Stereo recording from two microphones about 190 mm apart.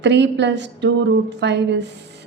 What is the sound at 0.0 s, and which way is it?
A woman's voice, 65° right (ahead or behind).